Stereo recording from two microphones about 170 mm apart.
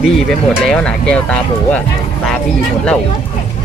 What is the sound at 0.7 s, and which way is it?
Speech, 5° left (ahead or behind).